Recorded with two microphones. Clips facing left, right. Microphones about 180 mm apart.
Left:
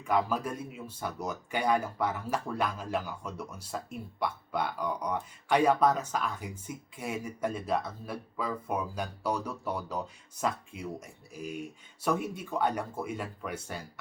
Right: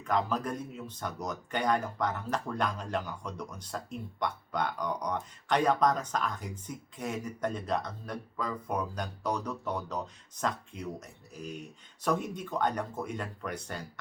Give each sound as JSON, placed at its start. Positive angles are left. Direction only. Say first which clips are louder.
{"t": 0.0, "sound": "speech", "louder": "left 1 dB", "side_deg": 10}